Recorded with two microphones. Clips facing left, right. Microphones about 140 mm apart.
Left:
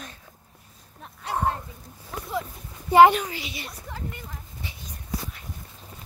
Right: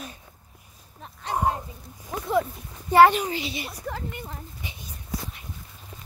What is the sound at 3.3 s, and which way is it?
Speech, 25° right (ahead or behind).